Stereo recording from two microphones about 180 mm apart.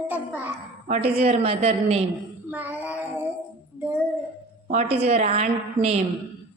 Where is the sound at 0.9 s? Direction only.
35° right (ahead or behind).